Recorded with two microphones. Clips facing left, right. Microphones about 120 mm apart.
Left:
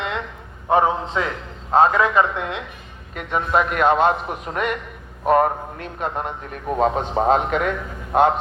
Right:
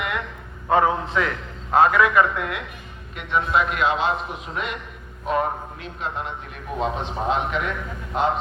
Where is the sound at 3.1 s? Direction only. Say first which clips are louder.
Left 1 dB; 45° left (ahead or behind).